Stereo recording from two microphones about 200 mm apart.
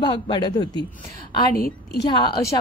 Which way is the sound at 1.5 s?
50° left (ahead or behind).